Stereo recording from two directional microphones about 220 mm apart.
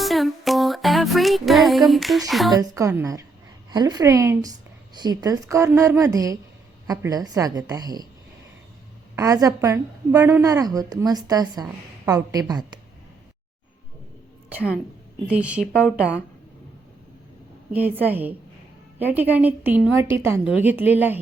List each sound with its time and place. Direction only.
0.0 s music: centre (ahead or behind)
2.5 s a woman's voice: 15° right (ahead or behind)
9.1 s a woman's voice: 15° right (ahead or behind)
15.3 s speech: 5° right (ahead or behind)
17.7 s a woman's voice: 5° right (ahead or behind)